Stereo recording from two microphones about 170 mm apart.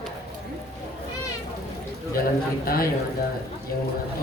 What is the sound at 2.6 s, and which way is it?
Speech, 60° left (ahead or behind).